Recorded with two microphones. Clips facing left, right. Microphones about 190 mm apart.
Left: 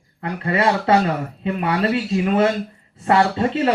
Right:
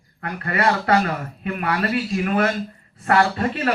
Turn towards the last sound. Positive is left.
turn(degrees=25)  # may be behind; listen again after turning